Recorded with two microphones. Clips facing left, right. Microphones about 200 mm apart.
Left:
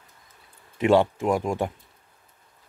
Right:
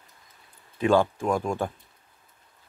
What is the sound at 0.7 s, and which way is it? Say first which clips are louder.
Speech: left 2 dB; 20° left (ahead or behind).